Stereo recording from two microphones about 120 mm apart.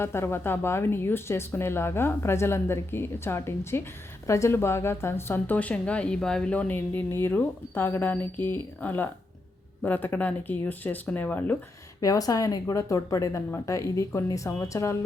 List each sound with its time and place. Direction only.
0.0 s a woman's voice: 20° left (ahead or behind)
11.9 s speech: 30° left (ahead or behind)